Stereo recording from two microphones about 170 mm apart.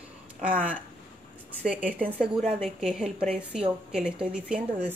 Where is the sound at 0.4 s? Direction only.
55° right (ahead or behind).